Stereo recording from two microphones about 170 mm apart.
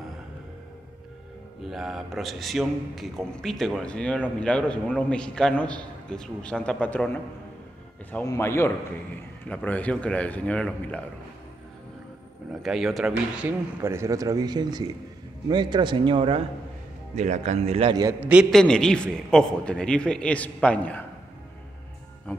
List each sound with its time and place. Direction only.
1.6 s a man's voice: centre (ahead or behind)
12.6 s a man's voice: centre (ahead or behind)
13.1 s speech: 15° right (ahead or behind); by 16.4 s 30° right (ahead or behind)
17.1 s speech: 45° right (ahead or behind)
18.2 s a man's voice: 5° right (ahead or behind)